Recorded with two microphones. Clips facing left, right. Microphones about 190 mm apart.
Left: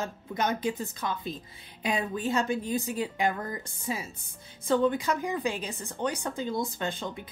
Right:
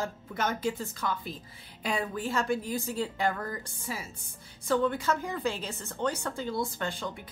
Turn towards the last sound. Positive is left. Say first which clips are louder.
# left 1 dB
turn(degrees=20)  # may be behind; listen again after turning